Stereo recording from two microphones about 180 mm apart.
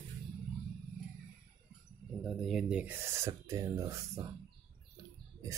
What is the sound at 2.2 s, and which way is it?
Speech, centre (ahead or behind).